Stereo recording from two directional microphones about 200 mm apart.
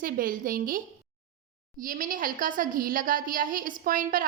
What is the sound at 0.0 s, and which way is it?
Speech, 45° right (ahead or behind).